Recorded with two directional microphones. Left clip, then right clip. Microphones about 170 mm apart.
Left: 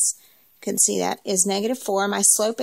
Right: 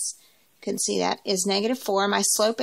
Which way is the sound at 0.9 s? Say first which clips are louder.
Left 1 dB; 40° left (ahead or behind).